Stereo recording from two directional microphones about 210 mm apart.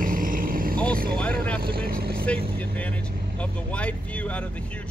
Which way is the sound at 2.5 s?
5° left (ahead or behind).